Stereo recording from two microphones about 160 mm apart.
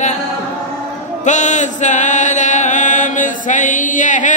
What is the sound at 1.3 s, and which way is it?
Chant, 50° left (ahead or behind).